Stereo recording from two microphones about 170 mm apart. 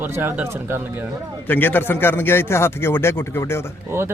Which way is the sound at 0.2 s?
10° right (ahead or behind).